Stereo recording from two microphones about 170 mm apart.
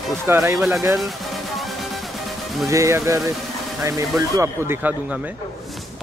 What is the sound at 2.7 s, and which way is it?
Speech, 20° right (ahead or behind).